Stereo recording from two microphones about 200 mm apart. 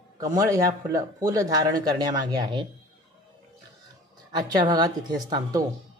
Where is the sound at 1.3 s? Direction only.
15° right (ahead or behind).